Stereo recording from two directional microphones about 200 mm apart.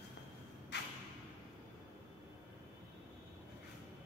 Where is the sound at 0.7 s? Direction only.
60° left (ahead or behind).